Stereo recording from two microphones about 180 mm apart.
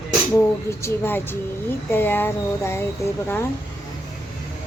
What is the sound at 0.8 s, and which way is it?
A woman's voice, 10° left (ahead or behind).